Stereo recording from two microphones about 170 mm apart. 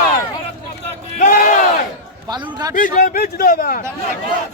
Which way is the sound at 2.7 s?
55° left (ahead or behind).